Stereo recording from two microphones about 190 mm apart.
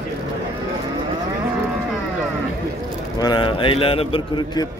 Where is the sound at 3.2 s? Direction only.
25° left (ahead or behind).